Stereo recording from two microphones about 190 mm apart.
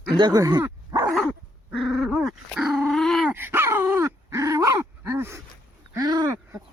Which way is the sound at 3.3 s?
10° right (ahead or behind).